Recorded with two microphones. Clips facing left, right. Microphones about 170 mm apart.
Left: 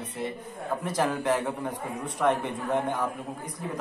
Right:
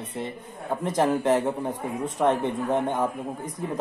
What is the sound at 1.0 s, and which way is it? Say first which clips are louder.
A man's voice: right 5 dB; 20° right (ahead or behind).